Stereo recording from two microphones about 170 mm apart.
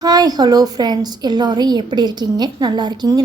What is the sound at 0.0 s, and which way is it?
A woman's voice, 20° right (ahead or behind).